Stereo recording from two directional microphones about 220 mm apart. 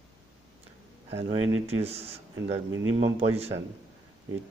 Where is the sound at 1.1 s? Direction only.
60° right (ahead or behind).